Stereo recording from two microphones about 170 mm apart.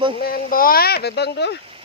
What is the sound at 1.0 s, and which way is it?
Speech, 75° left (ahead or behind).